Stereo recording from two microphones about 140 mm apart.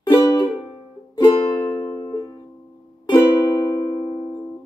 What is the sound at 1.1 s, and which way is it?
Music, 35° left (ahead or behind).